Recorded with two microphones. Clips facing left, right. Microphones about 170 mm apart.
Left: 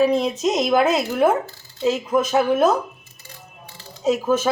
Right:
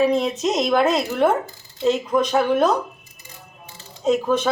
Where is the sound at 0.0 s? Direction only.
Centre (ahead or behind).